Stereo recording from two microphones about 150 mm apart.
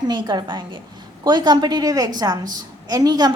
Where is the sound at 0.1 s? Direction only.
30° right (ahead or behind).